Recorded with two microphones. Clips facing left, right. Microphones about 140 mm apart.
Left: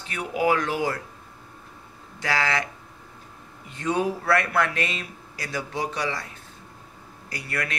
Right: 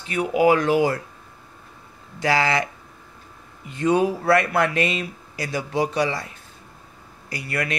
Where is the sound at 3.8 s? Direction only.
15° right (ahead or behind).